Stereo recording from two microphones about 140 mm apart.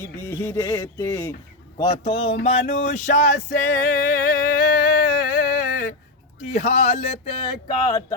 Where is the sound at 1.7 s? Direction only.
30° left (ahead or behind); by 3.5 s 60° left (ahead or behind).